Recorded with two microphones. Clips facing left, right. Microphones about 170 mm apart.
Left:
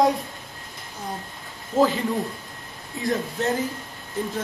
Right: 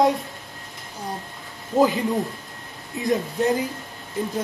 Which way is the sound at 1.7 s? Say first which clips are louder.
Right 1 dB; 15° right (ahead or behind).